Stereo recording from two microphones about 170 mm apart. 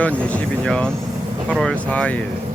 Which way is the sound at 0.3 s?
5° left (ahead or behind).